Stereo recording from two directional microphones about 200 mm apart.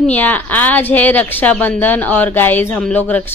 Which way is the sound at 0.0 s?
10° left (ahead or behind).